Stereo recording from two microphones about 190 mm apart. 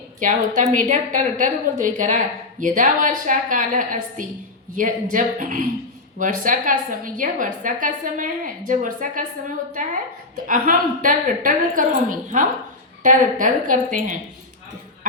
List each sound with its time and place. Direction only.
0.2 s a woman's voice: 40° right (ahead or behind)